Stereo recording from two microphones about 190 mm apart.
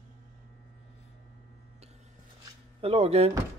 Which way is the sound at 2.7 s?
30° right (ahead or behind).